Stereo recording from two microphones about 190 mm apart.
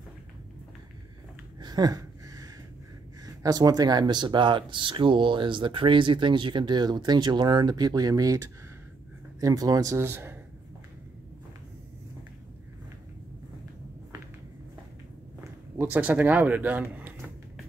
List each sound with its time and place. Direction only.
1.6 s a sound: 20° right (ahead or behind)
3.3 s a man's voice: 20° right (ahead or behind)
15.8 s speech: 10° right (ahead or behind)